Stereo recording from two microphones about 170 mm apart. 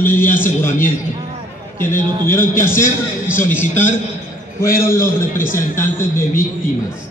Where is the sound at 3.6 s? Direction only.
45° left (ahead or behind).